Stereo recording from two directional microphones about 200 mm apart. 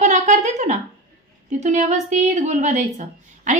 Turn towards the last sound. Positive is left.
turn(degrees=-35)  # may be behind; listen again after turning